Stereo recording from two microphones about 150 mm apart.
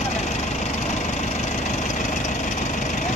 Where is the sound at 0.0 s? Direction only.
50° left (ahead or behind).